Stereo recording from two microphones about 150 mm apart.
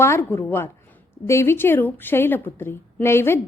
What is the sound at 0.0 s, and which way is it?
A woman's voice, 15° left (ahead or behind).